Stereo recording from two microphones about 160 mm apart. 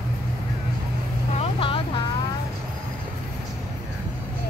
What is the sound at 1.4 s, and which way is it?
Vehicle, 35° left (ahead or behind).